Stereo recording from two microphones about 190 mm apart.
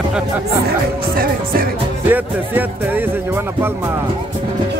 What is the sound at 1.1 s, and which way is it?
Music, 50° right (ahead or behind).